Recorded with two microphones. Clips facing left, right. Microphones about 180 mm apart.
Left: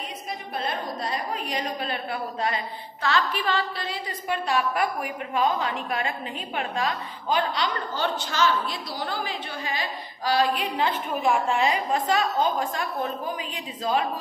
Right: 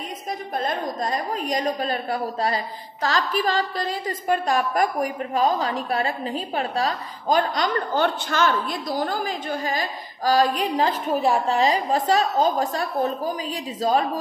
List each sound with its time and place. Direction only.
0.6 s a woman's voice: 45° right (ahead or behind)